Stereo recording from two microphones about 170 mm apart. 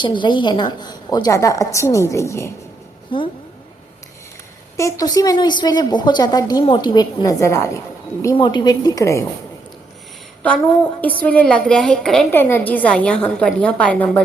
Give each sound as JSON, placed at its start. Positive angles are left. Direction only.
{"t": 0.0, "sound": "a woman's voice", "side_deg": 30}
{"t": 3.1, "sound": "a woman's voice", "side_deg": 30}
{"t": 4.8, "sound": "a woman's voice", "side_deg": 20}
{"t": 8.4, "sound": "a woman's voice", "side_deg": 25}
{"t": 11.0, "sound": "a woman's voice", "side_deg": 10}